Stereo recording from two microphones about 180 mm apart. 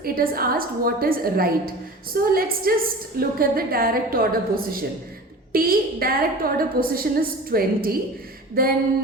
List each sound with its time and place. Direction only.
0.0 s a woman's voice: 55° right (ahead or behind)